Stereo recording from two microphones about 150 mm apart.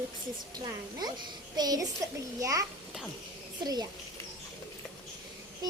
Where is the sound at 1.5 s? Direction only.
25° right (ahead or behind).